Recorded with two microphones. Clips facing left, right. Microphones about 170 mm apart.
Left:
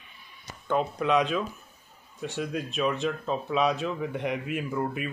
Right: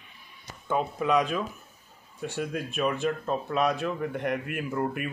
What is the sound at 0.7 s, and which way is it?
Speech, centre (ahead or behind).